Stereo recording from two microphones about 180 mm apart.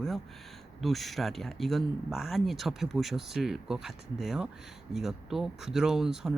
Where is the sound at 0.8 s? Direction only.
Centre (ahead or behind).